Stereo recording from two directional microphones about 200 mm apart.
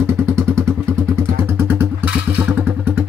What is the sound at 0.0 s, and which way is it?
Vehicle, 15° right (ahead or behind).